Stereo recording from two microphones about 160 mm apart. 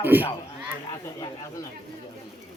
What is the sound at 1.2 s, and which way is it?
Speech, 20° left (ahead or behind).